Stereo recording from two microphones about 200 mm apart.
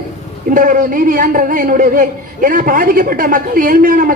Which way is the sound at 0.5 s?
40° right (ahead or behind).